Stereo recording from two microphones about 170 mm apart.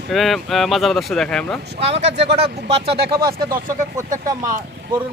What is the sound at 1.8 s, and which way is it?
Speech, 40° right (ahead or behind).